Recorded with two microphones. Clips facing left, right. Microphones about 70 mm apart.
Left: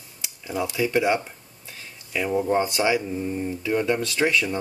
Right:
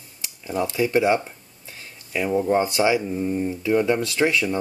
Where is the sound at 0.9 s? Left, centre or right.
Centre.